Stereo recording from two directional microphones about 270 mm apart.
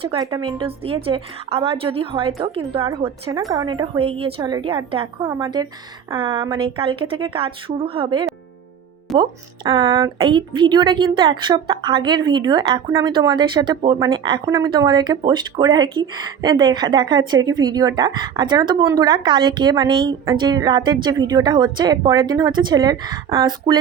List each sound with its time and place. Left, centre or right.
0.0 s a woman's voice: centre